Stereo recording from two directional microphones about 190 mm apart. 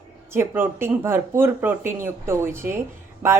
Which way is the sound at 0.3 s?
10° right (ahead or behind).